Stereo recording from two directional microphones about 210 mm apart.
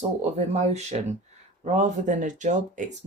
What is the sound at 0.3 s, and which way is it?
Speech, 35° right (ahead or behind).